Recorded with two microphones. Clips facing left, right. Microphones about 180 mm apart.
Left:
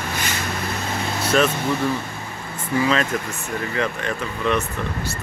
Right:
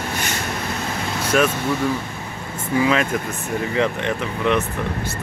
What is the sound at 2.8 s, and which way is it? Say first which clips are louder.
Speech: right 2 dB; 10° right (ahead or behind).